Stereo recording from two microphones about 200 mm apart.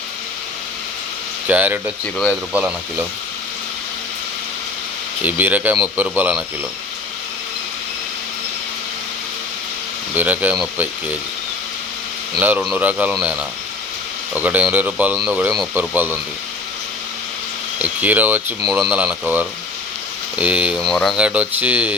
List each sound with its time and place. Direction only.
1.5 s speech: 10° right (ahead or behind)
5.2 s speech: 10° right (ahead or behind)
10.2 s speech: 10° right (ahead or behind)
12.4 s speech: 5° right (ahead or behind)
14.3 s speech: 5° right (ahead or behind)
17.7 s speech: 10° right (ahead or behind)